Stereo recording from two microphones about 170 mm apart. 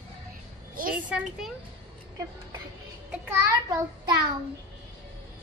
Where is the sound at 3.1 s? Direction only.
15° right (ahead or behind).